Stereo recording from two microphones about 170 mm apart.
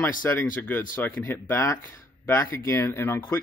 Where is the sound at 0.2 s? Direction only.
10° left (ahead or behind).